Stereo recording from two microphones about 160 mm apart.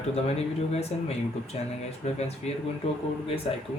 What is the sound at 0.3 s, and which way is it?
Speech, 40° left (ahead or behind).